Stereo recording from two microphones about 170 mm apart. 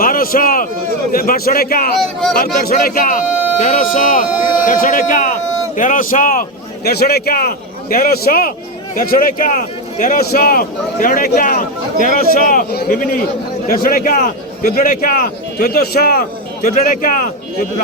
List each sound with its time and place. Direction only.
0.0 s a man's voice: 60° left (ahead or behind)
6.8 s a man's voice: 70° left (ahead or behind); by 17.3 s 50° left (ahead or behind)